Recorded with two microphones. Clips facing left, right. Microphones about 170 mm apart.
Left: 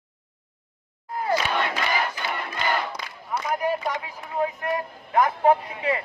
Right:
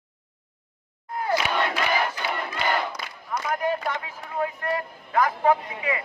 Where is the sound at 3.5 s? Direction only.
10° left (ahead or behind).